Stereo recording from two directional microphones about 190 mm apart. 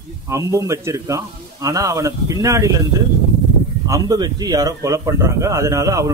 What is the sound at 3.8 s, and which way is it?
A man's voice, 20° right (ahead or behind).